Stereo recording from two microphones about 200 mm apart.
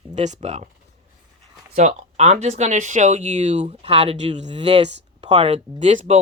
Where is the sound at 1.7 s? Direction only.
35° right (ahead or behind).